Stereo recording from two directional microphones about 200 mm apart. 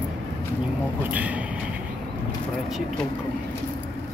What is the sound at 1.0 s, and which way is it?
Speech, 10° right (ahead or behind).